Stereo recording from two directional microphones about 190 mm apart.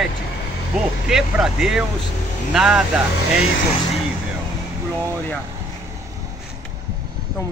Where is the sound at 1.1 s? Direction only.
Centre (ahead or behind).